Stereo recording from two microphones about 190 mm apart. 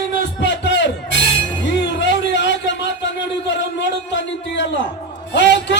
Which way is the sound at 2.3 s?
70° left (ahead or behind).